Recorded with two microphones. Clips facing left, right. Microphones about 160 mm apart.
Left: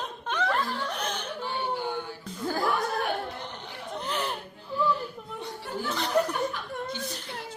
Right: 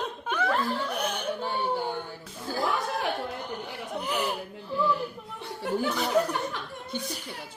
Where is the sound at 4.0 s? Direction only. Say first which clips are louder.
Right 2 dB; 10° right (ahead or behind).